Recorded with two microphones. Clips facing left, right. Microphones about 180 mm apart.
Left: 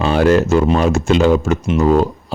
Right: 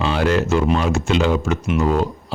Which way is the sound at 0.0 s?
45° left (ahead or behind).